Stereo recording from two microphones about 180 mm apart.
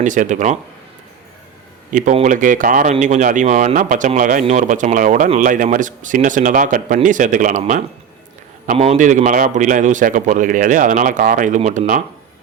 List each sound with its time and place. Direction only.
0.0 s speech: 45° right (ahead or behind)
1.9 s speech: 45° right (ahead or behind)
8.7 s speech: 35° right (ahead or behind)